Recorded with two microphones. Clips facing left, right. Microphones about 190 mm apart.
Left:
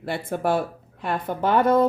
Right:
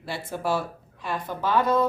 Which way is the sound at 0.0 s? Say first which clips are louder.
Left 5 dB; 55° left (ahead or behind).